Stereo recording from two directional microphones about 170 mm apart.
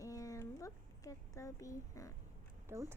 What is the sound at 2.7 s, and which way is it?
Speech, 15° right (ahead or behind).